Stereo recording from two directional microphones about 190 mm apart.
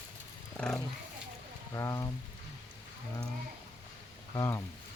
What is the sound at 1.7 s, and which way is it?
Speech, 15° left (ahead or behind).